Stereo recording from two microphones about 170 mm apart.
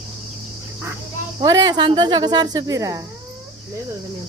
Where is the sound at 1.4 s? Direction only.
25° right (ahead or behind).